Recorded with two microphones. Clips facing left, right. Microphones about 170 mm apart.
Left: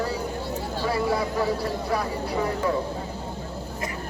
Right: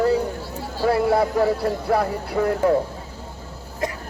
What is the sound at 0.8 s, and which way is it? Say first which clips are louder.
Speech: right 7 dB; 60° right (ahead or behind).